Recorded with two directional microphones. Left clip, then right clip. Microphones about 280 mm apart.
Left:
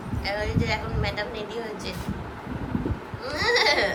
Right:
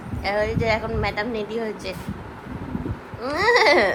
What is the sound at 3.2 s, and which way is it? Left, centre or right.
Speech, centre.